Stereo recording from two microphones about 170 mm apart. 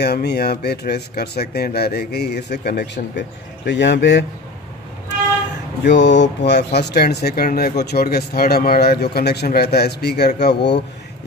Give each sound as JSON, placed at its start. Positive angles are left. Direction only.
{"t": 0.0, "sound": "speech", "side_deg": 75}
{"t": 5.9, "sound": "speech", "side_deg": 90}